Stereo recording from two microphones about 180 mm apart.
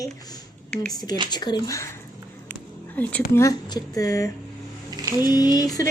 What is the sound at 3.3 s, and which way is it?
Speech, 20° left (ahead or behind).